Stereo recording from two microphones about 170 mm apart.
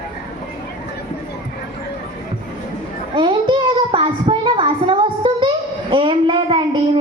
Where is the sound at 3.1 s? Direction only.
30° right (ahead or behind).